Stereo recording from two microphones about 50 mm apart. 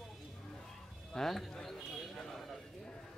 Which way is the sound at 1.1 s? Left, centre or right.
Centre.